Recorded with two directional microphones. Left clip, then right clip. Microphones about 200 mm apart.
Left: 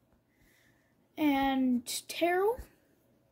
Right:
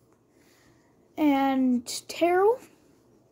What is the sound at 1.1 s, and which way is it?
Speech, 5° right (ahead or behind).